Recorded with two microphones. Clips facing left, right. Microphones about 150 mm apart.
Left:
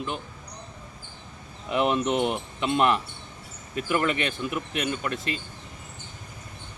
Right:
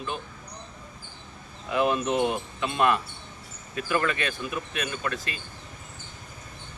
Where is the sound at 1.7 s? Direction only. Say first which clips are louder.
Left 1 dB; 25° left (ahead or behind).